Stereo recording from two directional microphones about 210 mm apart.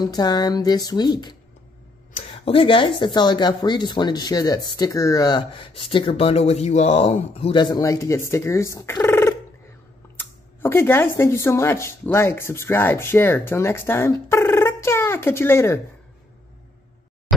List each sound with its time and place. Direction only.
0.0 s speech: 20° left (ahead or behind)
2.3 s speech: 25° left (ahead or behind)